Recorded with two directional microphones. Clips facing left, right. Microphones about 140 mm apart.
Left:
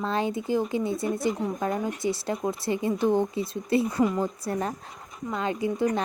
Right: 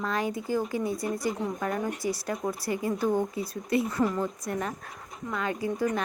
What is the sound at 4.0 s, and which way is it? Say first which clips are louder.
Speech: left 3 dB; 10° left (ahead or behind).